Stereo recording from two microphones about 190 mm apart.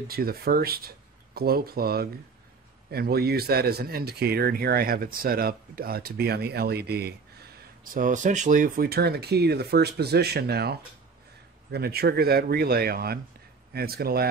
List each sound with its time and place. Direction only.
0.1 s speech: 50° right (ahead or behind)